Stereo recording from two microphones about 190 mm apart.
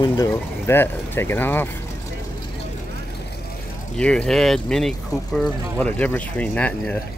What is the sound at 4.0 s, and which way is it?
Speech, 5° left (ahead or behind).